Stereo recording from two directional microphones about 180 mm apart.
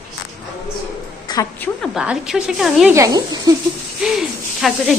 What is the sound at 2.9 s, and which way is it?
Speech, 20° right (ahead or behind).